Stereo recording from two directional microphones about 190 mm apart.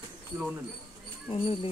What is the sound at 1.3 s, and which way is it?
Speech, 30° left (ahead or behind).